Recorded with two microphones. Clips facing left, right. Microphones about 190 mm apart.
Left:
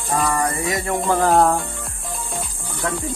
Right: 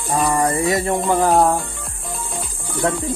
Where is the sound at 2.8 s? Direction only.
30° right (ahead or behind).